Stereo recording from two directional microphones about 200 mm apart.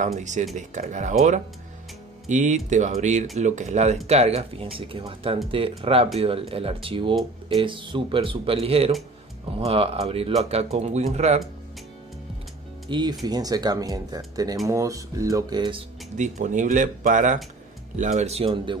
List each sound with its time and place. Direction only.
0.0 s speech: 35° right (ahead or behind)
2.2 s speech: 35° right (ahead or behind)
13.2 s speech: 20° right (ahead or behind)
16.2 s speech: 40° right (ahead or behind)